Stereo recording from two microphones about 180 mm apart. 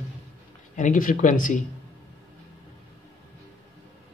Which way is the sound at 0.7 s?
45° left (ahead or behind).